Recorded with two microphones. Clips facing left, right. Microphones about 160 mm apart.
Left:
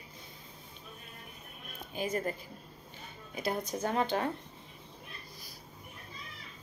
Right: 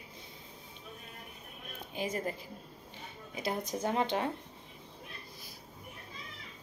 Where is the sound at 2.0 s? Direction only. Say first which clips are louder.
Left 2 dB; 20° right (ahead or behind).